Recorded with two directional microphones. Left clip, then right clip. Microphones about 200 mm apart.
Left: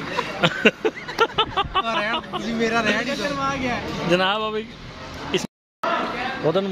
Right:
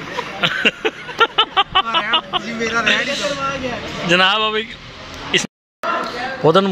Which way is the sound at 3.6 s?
5° right (ahead or behind).